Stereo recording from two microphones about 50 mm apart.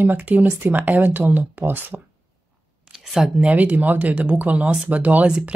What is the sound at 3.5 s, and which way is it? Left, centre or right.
Speech, right.